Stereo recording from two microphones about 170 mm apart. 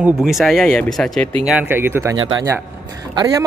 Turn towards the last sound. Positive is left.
turn(degrees=-20)  # may be behind; listen again after turning